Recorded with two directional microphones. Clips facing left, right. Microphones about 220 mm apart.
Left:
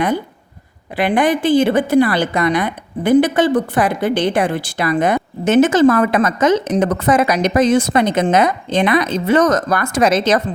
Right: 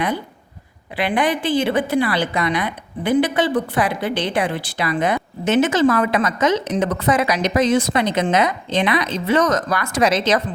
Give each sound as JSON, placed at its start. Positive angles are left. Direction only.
{"t": 0.9, "sound": "a woman's voice", "side_deg": 45}